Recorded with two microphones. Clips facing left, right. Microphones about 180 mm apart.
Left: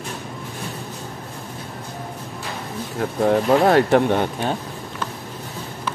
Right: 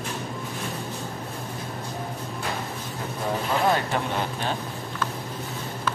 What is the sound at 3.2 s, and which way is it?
Speech, 65° left (ahead or behind).